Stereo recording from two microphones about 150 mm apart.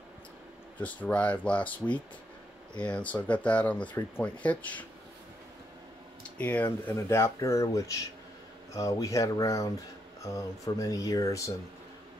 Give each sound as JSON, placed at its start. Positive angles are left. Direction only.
{"t": 0.7, "sound": "speech", "side_deg": 10}
{"t": 6.3, "sound": "speech", "side_deg": 10}